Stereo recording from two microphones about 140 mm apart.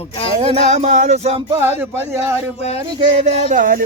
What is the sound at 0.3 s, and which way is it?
Music, 50° right (ahead or behind).